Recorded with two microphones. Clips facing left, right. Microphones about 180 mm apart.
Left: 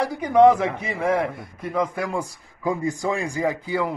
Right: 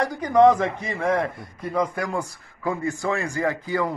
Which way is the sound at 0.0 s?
10° left (ahead or behind).